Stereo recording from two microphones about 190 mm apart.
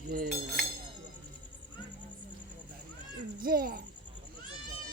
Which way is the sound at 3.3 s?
50° right (ahead or behind).